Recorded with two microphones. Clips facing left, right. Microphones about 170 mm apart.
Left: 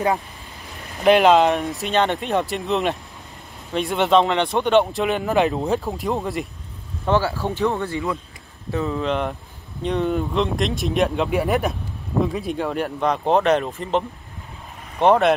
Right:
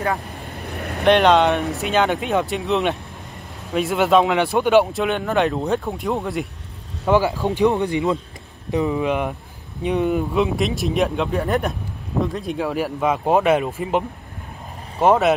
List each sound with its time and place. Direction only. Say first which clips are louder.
0.7 s vehicle: right 8 dB; 60° right (ahead or behind)
1.0 s speech: even; 5° left (ahead or behind)
7.1 s speech: right 3 dB; 15° right (ahead or behind)